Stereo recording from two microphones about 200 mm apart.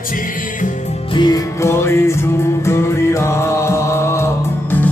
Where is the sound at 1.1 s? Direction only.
20° left (ahead or behind).